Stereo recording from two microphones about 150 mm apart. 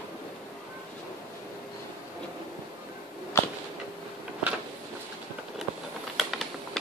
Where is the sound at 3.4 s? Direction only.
15° left (ahead or behind).